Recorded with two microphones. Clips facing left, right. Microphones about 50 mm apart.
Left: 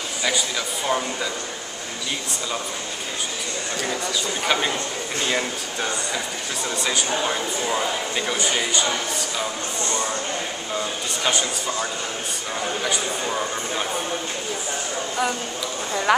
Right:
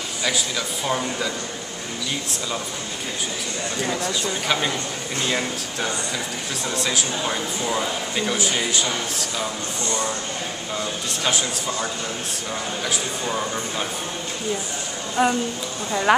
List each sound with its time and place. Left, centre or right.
0.8 s speech: centre
3.8 s speech: centre
11.2 s speech: centre
15.2 s speech: right
15.9 s speech: centre